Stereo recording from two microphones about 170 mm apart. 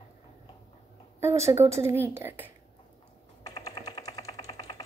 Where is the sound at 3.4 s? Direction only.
20° left (ahead or behind).